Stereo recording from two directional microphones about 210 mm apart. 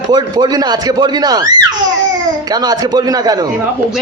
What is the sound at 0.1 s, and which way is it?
A man's voice, 20° right (ahead or behind).